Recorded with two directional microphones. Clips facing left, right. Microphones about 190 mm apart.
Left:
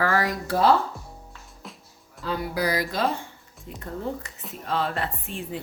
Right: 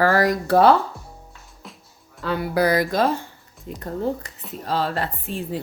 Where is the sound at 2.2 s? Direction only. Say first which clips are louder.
Right 6 dB; 60° right (ahead or behind).